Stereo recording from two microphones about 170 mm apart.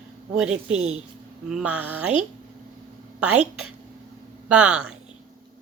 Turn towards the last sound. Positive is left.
turn(degrees=-5)  # may be behind; listen again after turning